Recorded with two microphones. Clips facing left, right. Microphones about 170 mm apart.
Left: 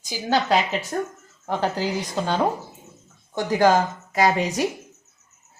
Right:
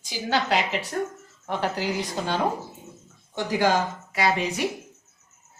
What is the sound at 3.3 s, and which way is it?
A woman's voice, 50° left (ahead or behind).